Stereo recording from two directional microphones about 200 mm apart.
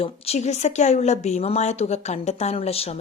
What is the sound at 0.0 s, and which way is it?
A woman's voice, 30° left (ahead or behind).